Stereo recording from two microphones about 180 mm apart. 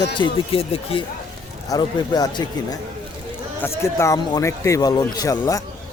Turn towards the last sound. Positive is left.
turn(degrees=20)  # may be behind; listen again after turning